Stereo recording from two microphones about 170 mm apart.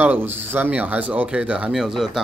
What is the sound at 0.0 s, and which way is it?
Speech, 10° right (ahead or behind).